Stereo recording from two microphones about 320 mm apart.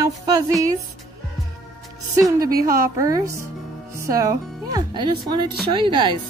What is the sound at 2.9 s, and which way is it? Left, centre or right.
Music, centre.